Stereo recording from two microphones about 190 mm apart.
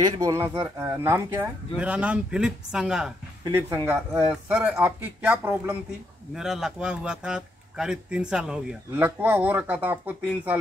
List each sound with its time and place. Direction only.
0.0 s a man's voice: 15° right (ahead or behind)